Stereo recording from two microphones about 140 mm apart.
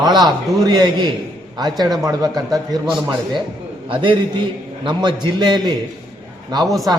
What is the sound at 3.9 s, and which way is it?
A man's voice, 35° right (ahead or behind).